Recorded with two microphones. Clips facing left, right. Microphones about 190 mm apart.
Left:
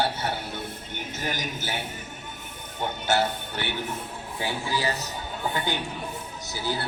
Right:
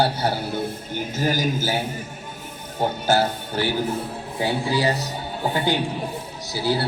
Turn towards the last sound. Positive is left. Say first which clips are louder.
# right 7 dB
turn(degrees=-35)  # may be behind; listen again after turning